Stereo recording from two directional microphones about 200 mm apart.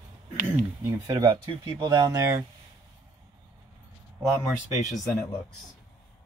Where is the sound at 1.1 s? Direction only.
20° right (ahead or behind).